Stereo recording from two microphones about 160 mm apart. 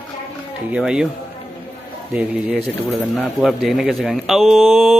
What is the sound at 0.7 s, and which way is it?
Speech, 5° right (ahead or behind).